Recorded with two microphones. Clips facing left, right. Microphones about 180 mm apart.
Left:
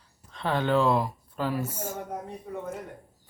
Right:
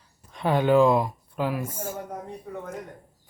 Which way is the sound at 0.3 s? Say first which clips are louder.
Right 5 dB; 10° right (ahead or behind).